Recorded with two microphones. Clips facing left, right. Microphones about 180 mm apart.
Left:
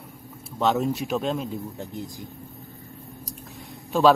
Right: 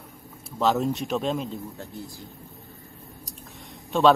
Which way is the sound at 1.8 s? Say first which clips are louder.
Left 4 dB; 15° left (ahead or behind).